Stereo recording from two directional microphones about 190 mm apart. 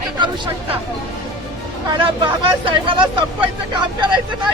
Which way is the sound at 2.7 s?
25° right (ahead or behind).